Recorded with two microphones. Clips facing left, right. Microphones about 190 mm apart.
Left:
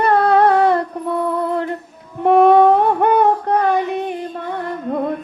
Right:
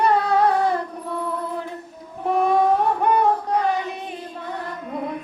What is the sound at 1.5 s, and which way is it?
Music, 65° left (ahead or behind).